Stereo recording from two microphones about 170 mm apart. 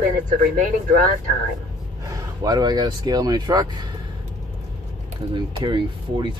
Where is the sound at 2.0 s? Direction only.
20° right (ahead or behind).